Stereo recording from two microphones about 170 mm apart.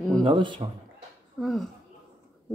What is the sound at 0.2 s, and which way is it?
Speech, 30° right (ahead or behind).